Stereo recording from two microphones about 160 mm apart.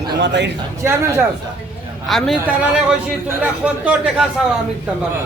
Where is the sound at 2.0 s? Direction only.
Centre (ahead or behind).